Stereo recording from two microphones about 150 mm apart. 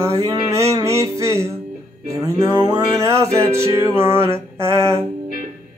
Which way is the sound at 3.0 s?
20° right (ahead or behind).